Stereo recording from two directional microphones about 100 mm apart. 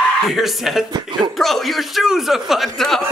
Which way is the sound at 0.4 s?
Centre (ahead or behind).